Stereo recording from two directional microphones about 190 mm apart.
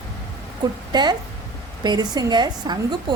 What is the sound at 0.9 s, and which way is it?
A woman's voice, 20° right (ahead or behind).